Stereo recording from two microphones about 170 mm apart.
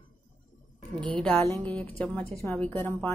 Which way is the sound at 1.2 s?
10° left (ahead or behind).